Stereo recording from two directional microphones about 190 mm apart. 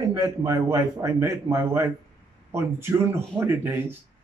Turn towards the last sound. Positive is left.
turn(degrees=-10)  # may be behind; listen again after turning